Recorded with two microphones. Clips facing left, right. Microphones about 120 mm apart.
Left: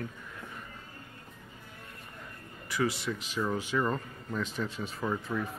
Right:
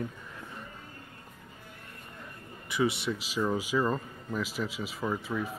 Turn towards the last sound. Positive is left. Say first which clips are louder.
# right 1 dB
turn(degrees=-5)  # may be behind; listen again after turning